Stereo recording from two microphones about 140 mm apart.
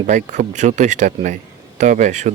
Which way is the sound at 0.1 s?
60° right (ahead or behind).